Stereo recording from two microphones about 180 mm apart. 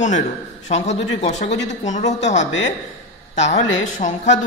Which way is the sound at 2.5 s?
90° left.